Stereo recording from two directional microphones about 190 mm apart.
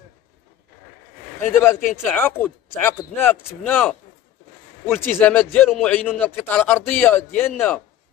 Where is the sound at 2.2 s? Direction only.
10° left (ahead or behind).